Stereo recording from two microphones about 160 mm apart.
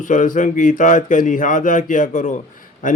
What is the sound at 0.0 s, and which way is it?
Speech, 55° left (ahead or behind).